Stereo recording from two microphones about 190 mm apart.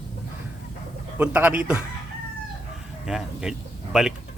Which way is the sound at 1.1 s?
10° right (ahead or behind).